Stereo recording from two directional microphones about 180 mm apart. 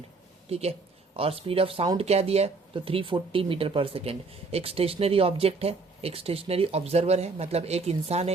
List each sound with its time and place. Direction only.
1.1 s speech: 30° right (ahead or behind)